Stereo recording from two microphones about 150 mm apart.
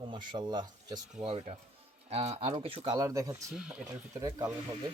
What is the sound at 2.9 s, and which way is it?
Speech, 25° right (ahead or behind).